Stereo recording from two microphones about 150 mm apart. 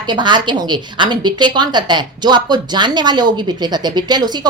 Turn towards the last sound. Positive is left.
turn(degrees=-25)  # may be behind; listen again after turning